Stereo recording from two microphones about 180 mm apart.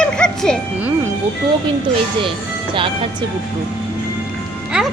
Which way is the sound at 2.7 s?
30° right (ahead or behind).